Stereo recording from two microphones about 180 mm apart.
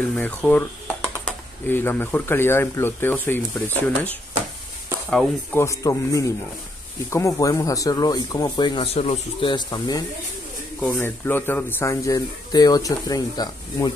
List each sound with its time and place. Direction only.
0.1 s speech: 5° left (ahead or behind)